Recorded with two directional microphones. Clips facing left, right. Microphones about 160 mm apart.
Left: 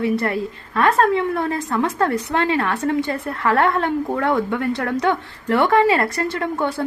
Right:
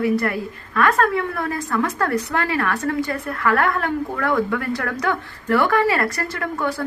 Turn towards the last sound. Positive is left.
turn(degrees=25)  # may be behind; listen again after turning